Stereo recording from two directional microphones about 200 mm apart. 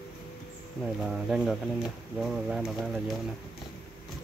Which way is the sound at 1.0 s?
5° right (ahead or behind).